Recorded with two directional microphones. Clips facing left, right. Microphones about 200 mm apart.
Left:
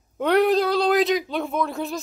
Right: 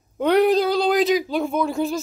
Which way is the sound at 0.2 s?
Centre (ahead or behind).